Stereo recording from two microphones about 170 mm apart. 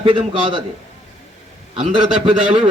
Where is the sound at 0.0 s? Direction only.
30° right (ahead or behind).